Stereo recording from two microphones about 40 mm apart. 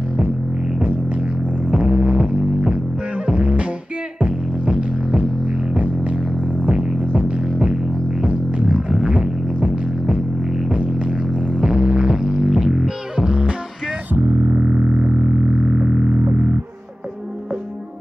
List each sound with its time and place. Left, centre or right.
1.7 s music: right
6.7 s music: right
14.1 s music: right
14.5 s music: right